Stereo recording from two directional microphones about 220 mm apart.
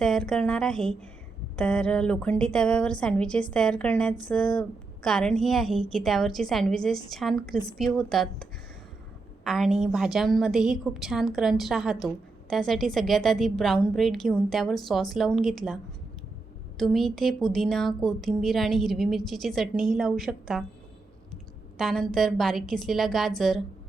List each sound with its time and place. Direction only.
0.0 s a woman's voice: centre (ahead or behind)
21.8 s a woman's voice: centre (ahead or behind)